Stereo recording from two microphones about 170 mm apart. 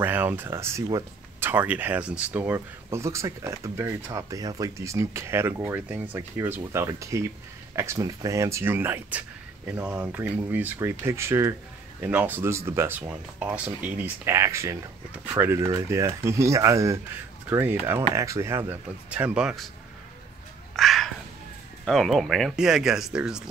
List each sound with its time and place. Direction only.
0.0 s speech: 10° right (ahead or behind)
20.7 s a sound: centre (ahead or behind)
21.8 s speech: centre (ahead or behind)